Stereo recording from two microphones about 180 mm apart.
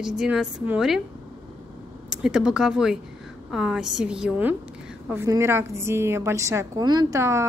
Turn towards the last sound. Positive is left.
turn(degrees=-15)  # may be behind; listen again after turning